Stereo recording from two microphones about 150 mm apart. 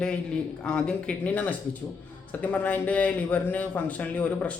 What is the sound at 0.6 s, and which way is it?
A man's voice, 5° left (ahead or behind).